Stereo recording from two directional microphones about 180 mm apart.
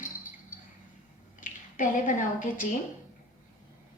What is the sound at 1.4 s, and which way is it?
Speech, 45° left (ahead or behind).